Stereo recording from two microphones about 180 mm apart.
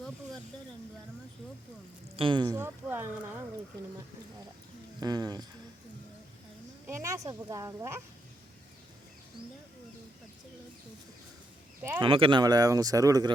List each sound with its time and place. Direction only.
2.1 s speech: 25° right (ahead or behind)
2.6 s a sound: 10° right (ahead or behind)
4.9 s speech: 20° right (ahead or behind)
6.8 s speech: 15° right (ahead or behind)
11.8 s speech: 10° right (ahead or behind)
12.0 s speech: 30° right (ahead or behind)